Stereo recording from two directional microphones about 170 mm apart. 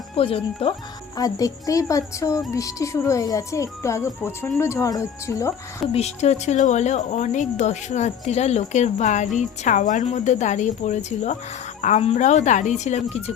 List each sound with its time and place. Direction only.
0.2 s a woman's voice: 35° left (ahead or behind)
1.1 s a woman's voice: 20° left (ahead or behind)
5.9 s a woman's voice: 40° left (ahead or behind)